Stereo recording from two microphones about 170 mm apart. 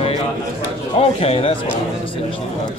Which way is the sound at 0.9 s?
35° left (ahead or behind).